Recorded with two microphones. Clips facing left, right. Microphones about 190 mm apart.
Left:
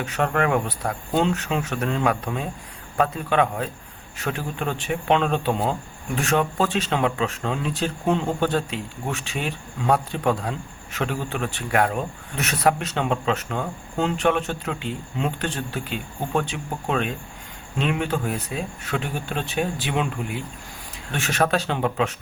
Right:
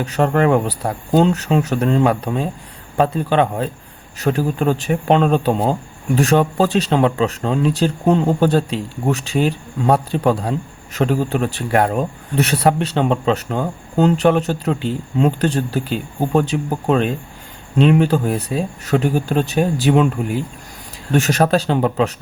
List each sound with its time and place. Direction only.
0.0 s speech: 35° right (ahead or behind)